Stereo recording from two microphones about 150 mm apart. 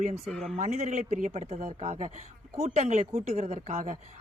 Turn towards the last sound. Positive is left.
turn(degrees=-55)  # may be behind; listen again after turning